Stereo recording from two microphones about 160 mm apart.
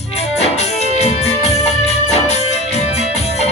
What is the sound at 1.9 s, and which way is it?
Music, 40° left (ahead or behind).